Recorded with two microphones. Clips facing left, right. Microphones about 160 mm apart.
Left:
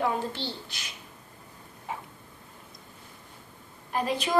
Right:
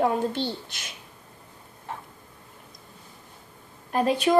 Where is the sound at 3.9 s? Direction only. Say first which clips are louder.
Right 5 dB; 50° right (ahead or behind).